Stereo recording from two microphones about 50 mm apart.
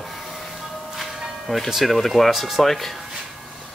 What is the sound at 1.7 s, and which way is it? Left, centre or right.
Speech, centre.